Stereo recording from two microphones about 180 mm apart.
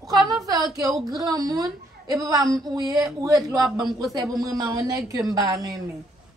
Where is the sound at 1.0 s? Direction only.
20° right (ahead or behind).